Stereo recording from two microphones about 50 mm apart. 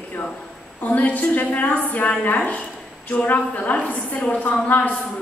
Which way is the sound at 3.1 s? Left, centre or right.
Left.